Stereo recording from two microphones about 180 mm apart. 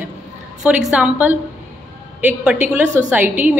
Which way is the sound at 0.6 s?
5° right (ahead or behind).